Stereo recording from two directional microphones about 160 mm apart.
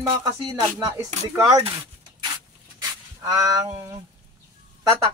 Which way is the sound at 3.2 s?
20° right (ahead or behind).